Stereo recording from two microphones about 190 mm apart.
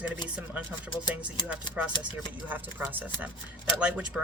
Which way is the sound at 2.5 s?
10° right (ahead or behind).